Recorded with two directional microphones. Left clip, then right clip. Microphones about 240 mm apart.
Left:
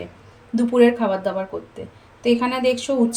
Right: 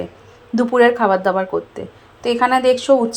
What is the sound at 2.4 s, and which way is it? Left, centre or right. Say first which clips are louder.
Speech: right 7 dB; right.